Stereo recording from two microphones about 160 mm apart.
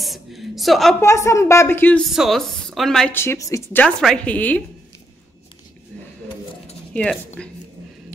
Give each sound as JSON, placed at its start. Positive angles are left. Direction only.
{"t": 0.0, "sound": "a woman's voice", "side_deg": 0}
{"t": 1.0, "sound": "a woman's voice", "side_deg": 20}
{"t": 2.0, "sound": "a woman's voice", "side_deg": 0}
{"t": 3.2, "sound": "a woman's voice", "side_deg": 20}
{"t": 6.9, "sound": "speech", "side_deg": 5}